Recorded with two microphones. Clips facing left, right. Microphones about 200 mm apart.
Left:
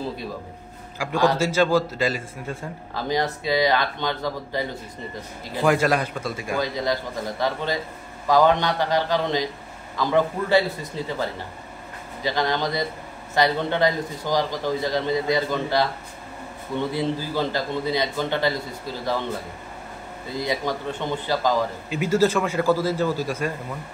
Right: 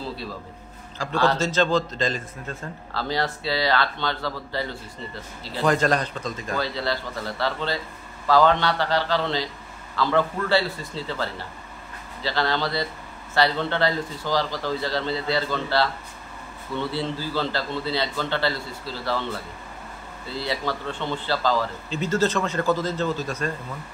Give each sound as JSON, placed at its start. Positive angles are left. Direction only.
{"t": 0.9, "sound": "a man's voice", "side_deg": 15}
{"t": 20.2, "sound": "a man's voice", "side_deg": 15}